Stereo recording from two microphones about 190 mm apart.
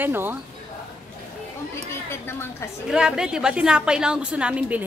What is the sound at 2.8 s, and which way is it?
A woman's voice, 5° right (ahead or behind).